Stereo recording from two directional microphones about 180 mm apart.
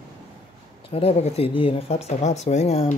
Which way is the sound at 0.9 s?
30° left (ahead or behind).